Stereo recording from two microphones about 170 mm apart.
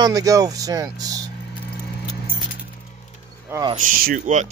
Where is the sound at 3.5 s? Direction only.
20° right (ahead or behind).